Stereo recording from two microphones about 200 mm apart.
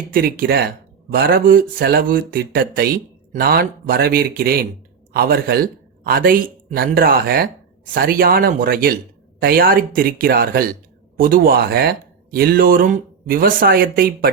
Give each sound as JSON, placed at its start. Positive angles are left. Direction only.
{"t": 0.1, "sound": "speech", "side_deg": -50}